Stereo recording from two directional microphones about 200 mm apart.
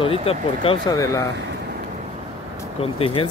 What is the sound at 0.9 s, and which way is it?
Speech, 15° left (ahead or behind).